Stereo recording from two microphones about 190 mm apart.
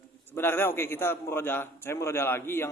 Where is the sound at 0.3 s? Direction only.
10° left (ahead or behind).